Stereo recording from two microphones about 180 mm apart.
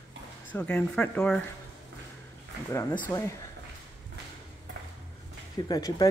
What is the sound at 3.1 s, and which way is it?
Speech, 10° left (ahead or behind).